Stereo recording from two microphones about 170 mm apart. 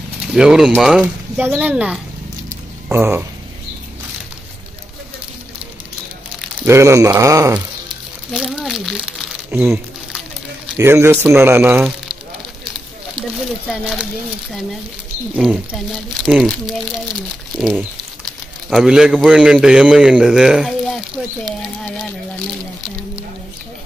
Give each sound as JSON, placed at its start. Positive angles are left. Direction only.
{"t": 0.3, "sound": "speech", "side_deg": -5}
{"t": 6.6, "sound": "speech", "side_deg": -15}
{"t": 8.3, "sound": "speech", "side_deg": 0}
{"t": 9.5, "sound": "a sound", "side_deg": -10}
{"t": 10.8, "sound": "speech", "side_deg": -15}
{"t": 13.7, "sound": "speech", "side_deg": -5}
{"t": 15.3, "sound": "speech", "side_deg": -5}
{"t": 17.6, "sound": "speech", "side_deg": 0}